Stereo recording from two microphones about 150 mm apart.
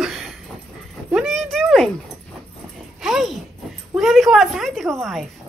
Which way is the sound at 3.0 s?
Centre (ahead or behind).